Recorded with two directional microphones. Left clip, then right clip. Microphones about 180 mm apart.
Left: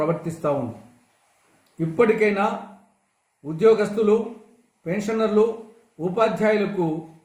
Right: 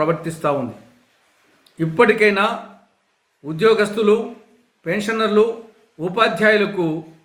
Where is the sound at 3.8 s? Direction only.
40° right (ahead or behind).